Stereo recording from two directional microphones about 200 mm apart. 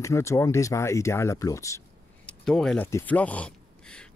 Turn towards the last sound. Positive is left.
turn(degrees=5)  # may be behind; listen again after turning